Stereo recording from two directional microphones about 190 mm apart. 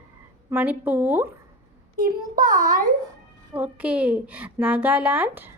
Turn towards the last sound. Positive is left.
turn(degrees=-10)  # may be behind; listen again after turning